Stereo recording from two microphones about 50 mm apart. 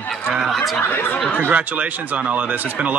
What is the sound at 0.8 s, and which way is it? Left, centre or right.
Speech, left.